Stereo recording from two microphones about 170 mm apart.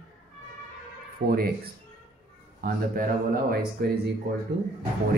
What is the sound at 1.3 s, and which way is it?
Speech, 65° right (ahead or behind).